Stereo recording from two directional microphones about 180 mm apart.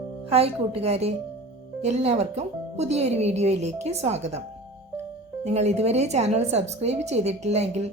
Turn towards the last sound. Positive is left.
turn(degrees=-35)  # may be behind; listen again after turning